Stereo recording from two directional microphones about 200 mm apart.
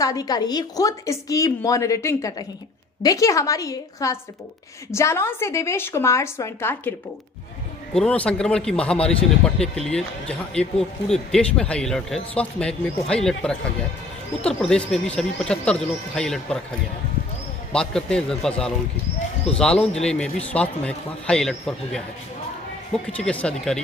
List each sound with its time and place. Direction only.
0.0 s speech: 20° left (ahead or behind)
7.9 s speech: 5° left (ahead or behind)
17.7 s speech: 5° left (ahead or behind)
23.0 s speech: 5° left (ahead or behind)